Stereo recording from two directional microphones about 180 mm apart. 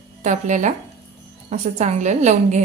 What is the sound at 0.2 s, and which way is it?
A woman's voice, 40° right (ahead or behind).